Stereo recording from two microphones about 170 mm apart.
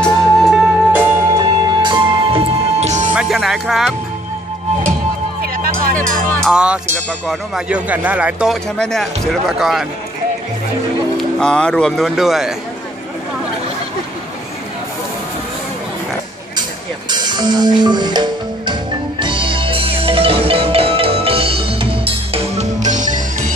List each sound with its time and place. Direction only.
0.0 s music: centre (ahead or behind)
0.9 s music: 20° right (ahead or behind); by 3.1 s 40° right (ahead or behind)
3.2 s music: centre (ahead or behind)
6.5 s speech: 5° right (ahead or behind)
11.3 s speech: 5° left (ahead or behind)
17.1 s music: 25° right (ahead or behind); by 23.1 s 45° right (ahead or behind)